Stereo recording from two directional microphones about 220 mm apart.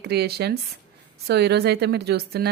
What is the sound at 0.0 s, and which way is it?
Speech, 45° right (ahead or behind).